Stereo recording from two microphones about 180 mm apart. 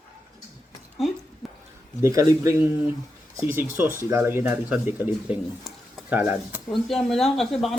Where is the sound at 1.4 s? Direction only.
Centre (ahead or behind).